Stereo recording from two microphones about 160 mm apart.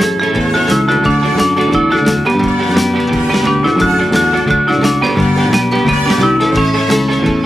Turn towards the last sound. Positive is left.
turn(degrees=0)  # may be behind; listen again after turning